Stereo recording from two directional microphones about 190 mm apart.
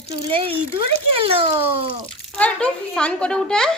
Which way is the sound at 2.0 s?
5° left (ahead or behind).